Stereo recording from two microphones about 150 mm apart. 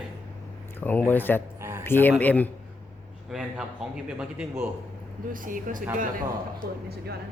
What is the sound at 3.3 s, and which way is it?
A man's voice, 5° right (ahead or behind).